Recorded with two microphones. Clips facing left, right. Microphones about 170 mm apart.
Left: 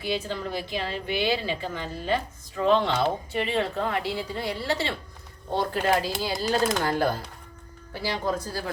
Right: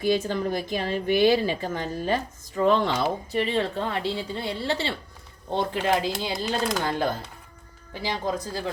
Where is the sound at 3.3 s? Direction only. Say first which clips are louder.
Right 2 dB; 35° right (ahead or behind).